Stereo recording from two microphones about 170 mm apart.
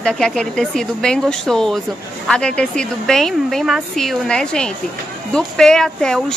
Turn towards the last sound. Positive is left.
turn(degrees=5)  # may be behind; listen again after turning